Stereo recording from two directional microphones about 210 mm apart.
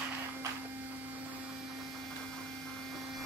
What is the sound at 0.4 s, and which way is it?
Printer, 5° right (ahead or behind).